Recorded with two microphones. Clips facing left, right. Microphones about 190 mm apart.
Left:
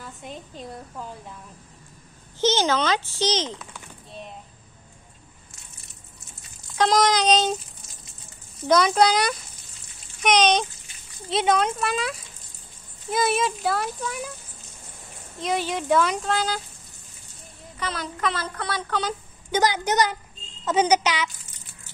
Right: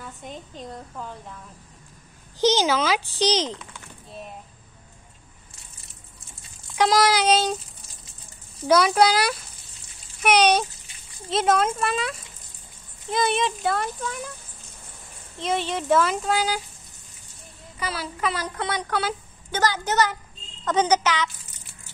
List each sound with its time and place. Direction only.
0.0 s a woman's voice: 5° left (ahead or behind)
2.4 s a child's voice: 10° right (ahead or behind)
6.7 s a child's voice: 10° right (ahead or behind)
8.6 s a child's voice: 5° right (ahead or behind); by 14.3 s 10° left (ahead or behind)
15.4 s speech: centre (ahead or behind)
17.7 s a child's voice: 5° right (ahead or behind)
19.5 s a child's voice: 15° left (ahead or behind)